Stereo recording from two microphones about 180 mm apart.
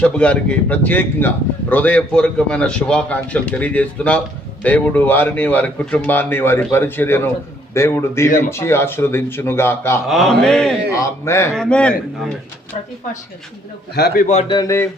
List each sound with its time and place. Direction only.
0.0 s a man's voice: 5° left (ahead or behind)
10.1 s a man's voice: centre (ahead or behind)
10.9 s a man's voice: 15° left (ahead or behind)
11.5 s a man's voice: 5° left (ahead or behind)
13.9 s a man's voice: 60° left (ahead or behind)
14.4 s speech: 20° left (ahead or behind)